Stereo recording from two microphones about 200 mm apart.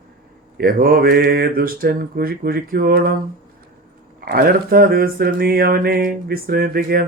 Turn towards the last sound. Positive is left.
turn(degrees=-45)  # may be behind; listen again after turning